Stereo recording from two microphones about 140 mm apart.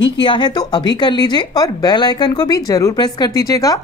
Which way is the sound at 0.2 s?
35° left (ahead or behind).